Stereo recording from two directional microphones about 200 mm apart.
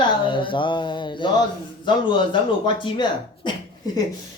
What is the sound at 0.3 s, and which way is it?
Speech, 25° left (ahead or behind).